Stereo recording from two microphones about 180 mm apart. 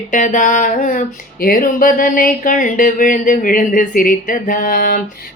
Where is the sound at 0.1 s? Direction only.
45° left (ahead or behind).